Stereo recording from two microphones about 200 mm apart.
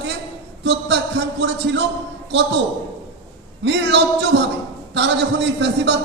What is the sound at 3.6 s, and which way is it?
A man's voice, 60° right (ahead or behind).